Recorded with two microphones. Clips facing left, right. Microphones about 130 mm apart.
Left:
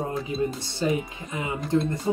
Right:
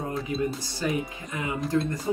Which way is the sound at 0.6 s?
25° left (ahead or behind).